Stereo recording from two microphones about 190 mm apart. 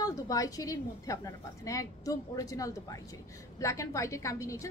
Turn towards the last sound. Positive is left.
turn(degrees=15)  # may be behind; listen again after turning